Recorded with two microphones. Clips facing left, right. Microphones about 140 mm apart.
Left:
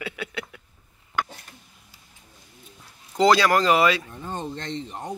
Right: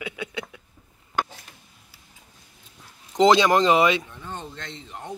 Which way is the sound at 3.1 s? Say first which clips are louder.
Right 1 dB; 20° right (ahead or behind).